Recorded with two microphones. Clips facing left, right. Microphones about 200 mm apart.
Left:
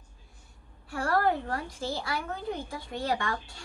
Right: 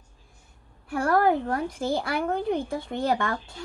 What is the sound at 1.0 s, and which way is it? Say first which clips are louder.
Speech: right 5 dB; 50° right (ahead or behind).